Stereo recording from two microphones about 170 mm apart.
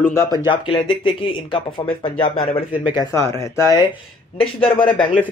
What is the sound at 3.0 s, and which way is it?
Speech, 20° left (ahead or behind).